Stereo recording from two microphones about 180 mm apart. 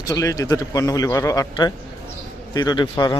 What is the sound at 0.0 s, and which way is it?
Speech, 20° left (ahead or behind).